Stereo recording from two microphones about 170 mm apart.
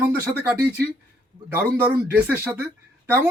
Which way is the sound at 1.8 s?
10° right (ahead or behind).